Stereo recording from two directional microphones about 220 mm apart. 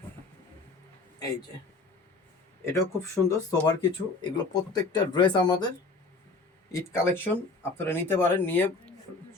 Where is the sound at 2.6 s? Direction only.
15° left (ahead or behind).